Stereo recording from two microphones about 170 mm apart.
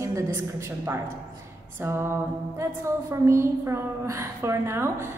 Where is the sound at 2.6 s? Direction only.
15° right (ahead or behind).